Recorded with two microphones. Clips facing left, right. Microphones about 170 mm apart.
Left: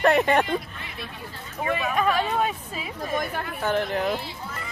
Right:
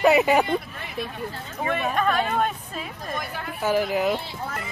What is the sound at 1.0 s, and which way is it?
Speech, 45° right (ahead or behind).